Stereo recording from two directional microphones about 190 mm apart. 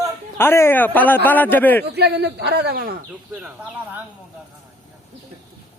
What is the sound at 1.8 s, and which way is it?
Speech, 60° right (ahead or behind).